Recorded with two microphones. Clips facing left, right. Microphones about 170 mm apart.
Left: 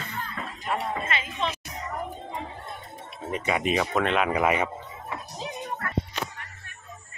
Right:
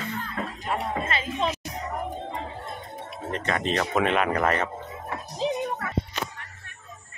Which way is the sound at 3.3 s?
10° left (ahead or behind).